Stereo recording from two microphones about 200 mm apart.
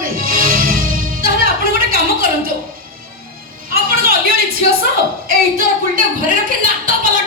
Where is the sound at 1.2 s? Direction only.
45° right (ahead or behind).